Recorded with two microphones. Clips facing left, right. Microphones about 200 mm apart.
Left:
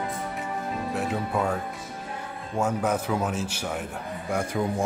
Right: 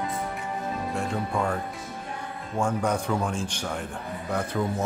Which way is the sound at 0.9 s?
5° left (ahead or behind).